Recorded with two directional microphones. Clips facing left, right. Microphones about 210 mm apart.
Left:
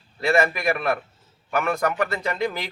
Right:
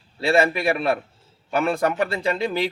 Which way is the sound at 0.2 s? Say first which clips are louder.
Right 2 dB; 30° right (ahead or behind).